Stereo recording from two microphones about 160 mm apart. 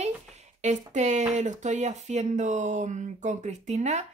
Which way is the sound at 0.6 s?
50° right (ahead or behind).